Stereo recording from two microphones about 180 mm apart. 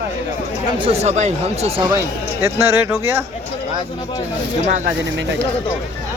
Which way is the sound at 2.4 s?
15° right (ahead or behind).